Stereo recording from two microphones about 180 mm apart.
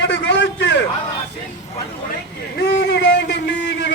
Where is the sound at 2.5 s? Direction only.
70° left (ahead or behind).